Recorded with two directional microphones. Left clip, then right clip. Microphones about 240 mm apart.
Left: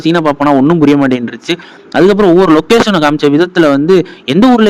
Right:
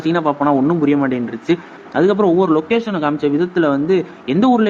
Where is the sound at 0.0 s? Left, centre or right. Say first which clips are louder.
Left 6 dB; left.